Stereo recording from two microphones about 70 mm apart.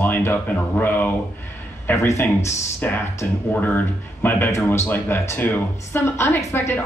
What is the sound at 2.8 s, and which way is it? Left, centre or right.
A woman's voice, left.